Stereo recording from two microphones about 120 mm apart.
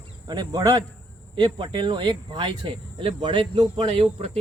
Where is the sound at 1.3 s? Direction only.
40° right (ahead or behind).